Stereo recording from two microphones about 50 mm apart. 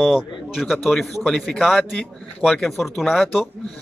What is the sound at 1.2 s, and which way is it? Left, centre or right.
Speech, centre.